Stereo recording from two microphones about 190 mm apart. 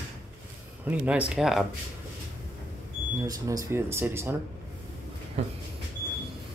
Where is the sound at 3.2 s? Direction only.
20° right (ahead or behind).